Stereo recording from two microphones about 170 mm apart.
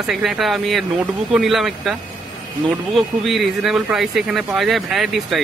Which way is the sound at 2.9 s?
Centre (ahead or behind).